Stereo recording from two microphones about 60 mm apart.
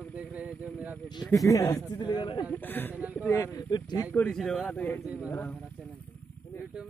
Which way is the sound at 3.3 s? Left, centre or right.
Left.